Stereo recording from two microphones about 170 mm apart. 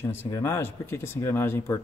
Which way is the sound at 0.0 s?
15° left (ahead or behind).